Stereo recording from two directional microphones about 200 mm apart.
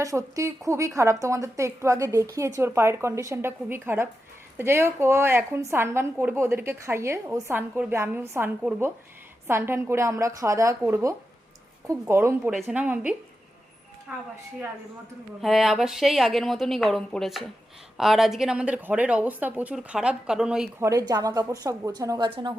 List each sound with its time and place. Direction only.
0.0 s a woman's voice: 15° right (ahead or behind)
15.4 s speech: centre (ahead or behind)
20.8 s a woman's voice: 20° right (ahead or behind)